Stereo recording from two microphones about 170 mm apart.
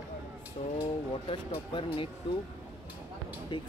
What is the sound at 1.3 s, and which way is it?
Speech, 30° left (ahead or behind).